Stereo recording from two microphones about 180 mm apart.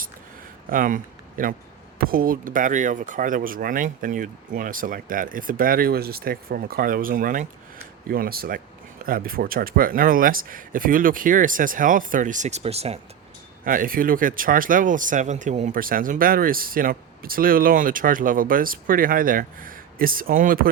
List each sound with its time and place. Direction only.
0.7 s speech: 50° right (ahead or behind)
13.7 s speech: 50° right (ahead or behind)